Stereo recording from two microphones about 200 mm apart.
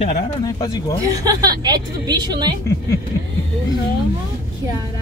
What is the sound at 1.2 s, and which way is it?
A woman's voice, 20° right (ahead or behind).